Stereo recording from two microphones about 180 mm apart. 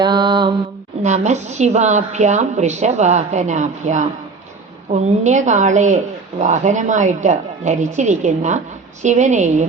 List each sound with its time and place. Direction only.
0.0 s mantra: 25° right (ahead or behind)
1.0 s a woman's voice: 40° right (ahead or behind)